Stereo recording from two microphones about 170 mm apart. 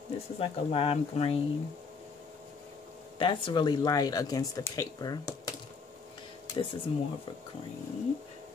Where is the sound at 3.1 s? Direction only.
30° left (ahead or behind).